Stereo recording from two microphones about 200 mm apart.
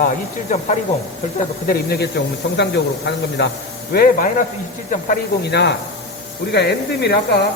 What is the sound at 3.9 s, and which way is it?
A man's voice, 45° left (ahead or behind).